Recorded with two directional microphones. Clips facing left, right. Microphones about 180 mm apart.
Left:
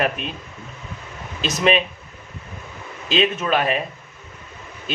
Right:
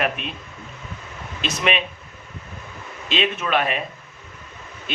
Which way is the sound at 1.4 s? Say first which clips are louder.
Left 4 dB; 35° left (ahead or behind).